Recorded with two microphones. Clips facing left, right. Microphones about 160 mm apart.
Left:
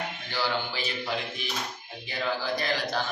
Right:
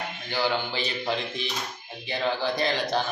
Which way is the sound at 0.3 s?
15° right (ahead or behind).